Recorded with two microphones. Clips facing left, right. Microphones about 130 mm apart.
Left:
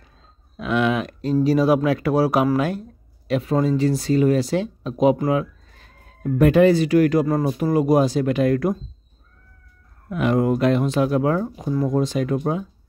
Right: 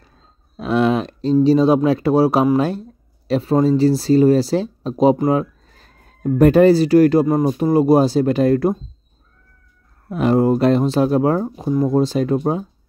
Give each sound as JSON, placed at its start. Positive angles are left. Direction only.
{"t": 0.6, "sound": "a sound", "side_deg": -35}
{"t": 1.4, "sound": "speech", "side_deg": -25}
{"t": 10.0, "sound": "speech", "side_deg": -35}